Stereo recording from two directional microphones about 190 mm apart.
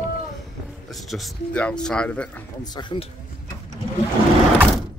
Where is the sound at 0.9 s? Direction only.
Centre (ahead or behind).